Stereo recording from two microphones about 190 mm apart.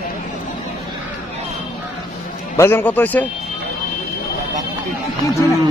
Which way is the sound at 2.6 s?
10° left (ahead or behind).